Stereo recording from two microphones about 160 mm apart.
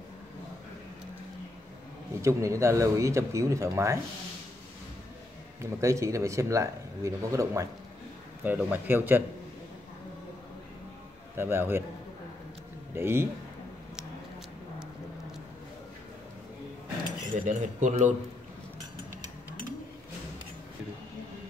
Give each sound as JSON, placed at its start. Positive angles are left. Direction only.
{"t": 2.2, "sound": "speech", "side_deg": -20}
{"t": 5.6, "sound": "speech", "side_deg": -20}
{"t": 11.3, "sound": "speech", "side_deg": -15}
{"t": 12.9, "sound": "speech", "side_deg": -15}
{"t": 17.3, "sound": "speech", "side_deg": -50}